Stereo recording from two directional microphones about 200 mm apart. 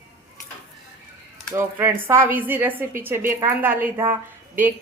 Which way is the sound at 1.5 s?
10° right (ahead or behind).